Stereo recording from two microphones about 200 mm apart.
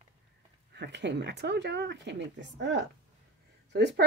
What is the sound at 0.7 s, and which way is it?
Speech, 60° right (ahead or behind).